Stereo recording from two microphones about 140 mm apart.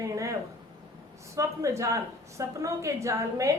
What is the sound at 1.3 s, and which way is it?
A woman's voice, 20° right (ahead or behind).